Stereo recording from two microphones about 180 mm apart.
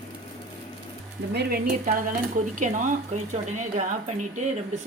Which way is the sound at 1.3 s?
60° right (ahead or behind).